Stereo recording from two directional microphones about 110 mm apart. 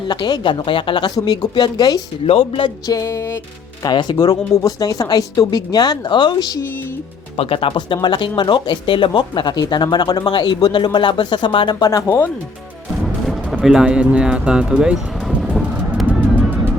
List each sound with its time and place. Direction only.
0.1 s speech: 40° left (ahead or behind)
2.2 s speech: 60° left (ahead or behind)
2.8 s music: 30° left (ahead or behind)
3.8 s speech: 40° left (ahead or behind)
7.3 s speech: 55° left (ahead or behind)
8.0 s speech: 45° left (ahead or behind)
12.0 s speech: 15° left (ahead or behind)
13.2 s music: centre (ahead or behind)